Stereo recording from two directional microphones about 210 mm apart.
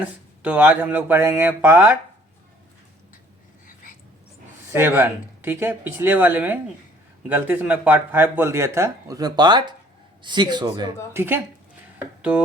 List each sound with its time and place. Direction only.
0.0 s speech: 5° right (ahead or behind)
4.7 s speech: 10° right (ahead or behind)